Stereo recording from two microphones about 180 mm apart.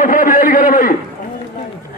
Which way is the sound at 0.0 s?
50° left (ahead or behind).